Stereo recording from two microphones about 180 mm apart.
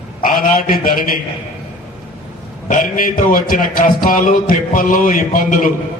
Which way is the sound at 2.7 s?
50° left (ahead or behind).